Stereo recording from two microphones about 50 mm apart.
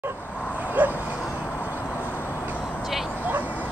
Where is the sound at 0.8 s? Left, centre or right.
Right.